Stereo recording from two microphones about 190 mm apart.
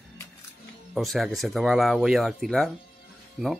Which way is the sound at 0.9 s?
Centre (ahead or behind).